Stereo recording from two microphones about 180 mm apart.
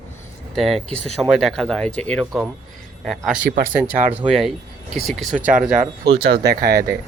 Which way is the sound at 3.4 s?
65° right (ahead or behind).